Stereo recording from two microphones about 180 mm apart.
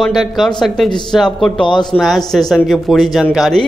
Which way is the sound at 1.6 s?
25° left (ahead or behind).